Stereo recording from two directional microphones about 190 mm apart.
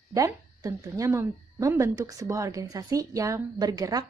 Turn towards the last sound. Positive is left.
turn(degrees=-20)  # may be behind; listen again after turning